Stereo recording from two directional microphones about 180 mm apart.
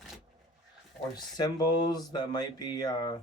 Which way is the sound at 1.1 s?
25° left (ahead or behind).